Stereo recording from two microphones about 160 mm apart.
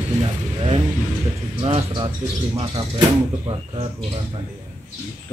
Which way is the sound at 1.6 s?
35° right (ahead or behind).